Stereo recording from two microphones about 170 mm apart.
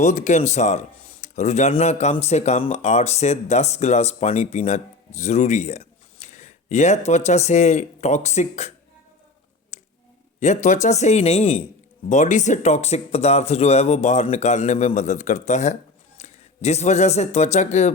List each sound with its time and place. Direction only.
0.0 s speech: 45° left (ahead or behind)
9.7 s finger snapping: 40° left (ahead or behind)
10.4 s speech: 45° left (ahead or behind)